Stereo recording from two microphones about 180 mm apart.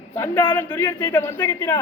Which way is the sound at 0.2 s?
20° left (ahead or behind).